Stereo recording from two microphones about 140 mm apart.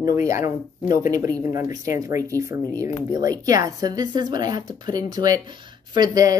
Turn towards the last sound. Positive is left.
turn(degrees=-25)  # may be behind; listen again after turning